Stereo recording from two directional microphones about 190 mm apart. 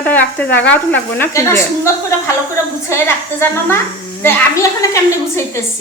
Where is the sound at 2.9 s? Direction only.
10° left (ahead or behind).